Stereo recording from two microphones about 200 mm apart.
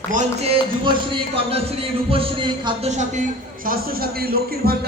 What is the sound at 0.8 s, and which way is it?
A man's voice, 25° right (ahead or behind).